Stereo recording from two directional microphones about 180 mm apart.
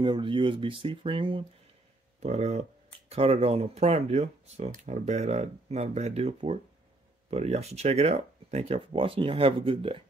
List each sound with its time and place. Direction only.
0.0 s speech: 25° right (ahead or behind)